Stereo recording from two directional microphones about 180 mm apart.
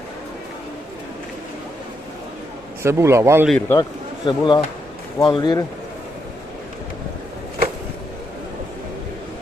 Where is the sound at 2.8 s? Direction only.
15° right (ahead or behind).